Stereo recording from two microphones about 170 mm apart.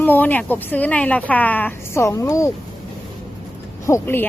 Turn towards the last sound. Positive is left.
turn(degrees=10)  # may be behind; listen again after turning